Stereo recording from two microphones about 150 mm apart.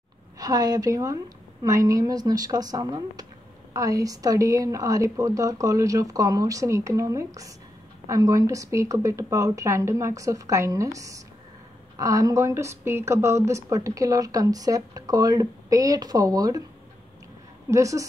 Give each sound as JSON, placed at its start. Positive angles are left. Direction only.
{"t": 0.4, "sound": "speech", "side_deg": -25}
{"t": 17.6, "sound": "speech", "side_deg": -20}